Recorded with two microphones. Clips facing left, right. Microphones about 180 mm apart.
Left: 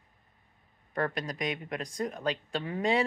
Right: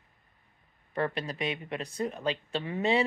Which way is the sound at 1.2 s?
40° left (ahead or behind).